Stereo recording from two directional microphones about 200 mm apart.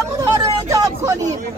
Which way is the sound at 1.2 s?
40° right (ahead or behind).